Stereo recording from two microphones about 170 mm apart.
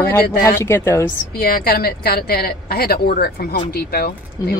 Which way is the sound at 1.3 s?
60° left (ahead or behind).